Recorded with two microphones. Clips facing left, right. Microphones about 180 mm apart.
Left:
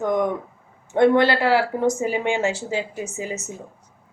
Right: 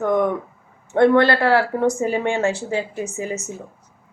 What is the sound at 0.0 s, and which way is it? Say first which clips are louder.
Speech: right 2 dB; 15° left (ahead or behind).